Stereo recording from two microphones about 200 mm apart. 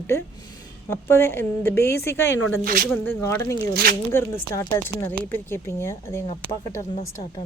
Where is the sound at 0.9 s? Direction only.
10° left (ahead or behind).